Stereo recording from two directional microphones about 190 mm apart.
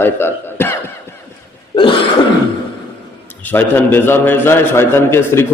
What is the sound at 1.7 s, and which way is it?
Cough, 25° left (ahead or behind).